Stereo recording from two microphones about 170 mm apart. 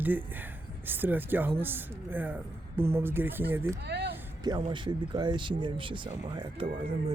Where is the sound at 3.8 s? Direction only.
80° right.